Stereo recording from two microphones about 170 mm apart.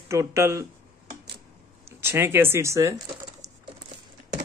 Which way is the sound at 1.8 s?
15° right (ahead or behind).